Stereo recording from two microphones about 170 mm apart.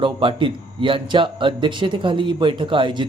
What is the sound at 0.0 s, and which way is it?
A man's voice, 30° right (ahead or behind).